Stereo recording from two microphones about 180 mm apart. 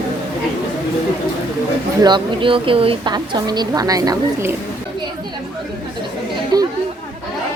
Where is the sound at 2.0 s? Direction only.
25° right (ahead or behind).